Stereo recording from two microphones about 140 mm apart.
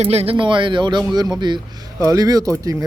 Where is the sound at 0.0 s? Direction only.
45° right (ahead or behind).